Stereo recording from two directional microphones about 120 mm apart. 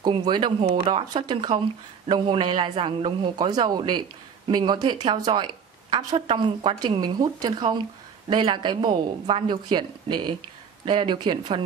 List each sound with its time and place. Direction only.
0.0 s a woman's voice: 40° right (ahead or behind)